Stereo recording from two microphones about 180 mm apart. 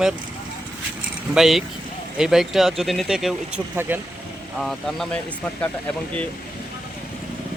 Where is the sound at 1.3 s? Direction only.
Centre (ahead or behind).